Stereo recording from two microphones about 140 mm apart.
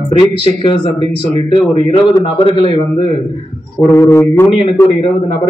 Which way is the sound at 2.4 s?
35° left (ahead or behind).